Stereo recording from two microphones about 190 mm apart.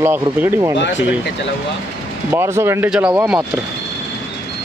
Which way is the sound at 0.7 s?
70° left (ahead or behind).